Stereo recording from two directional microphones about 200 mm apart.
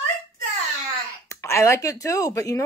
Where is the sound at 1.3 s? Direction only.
15° left (ahead or behind).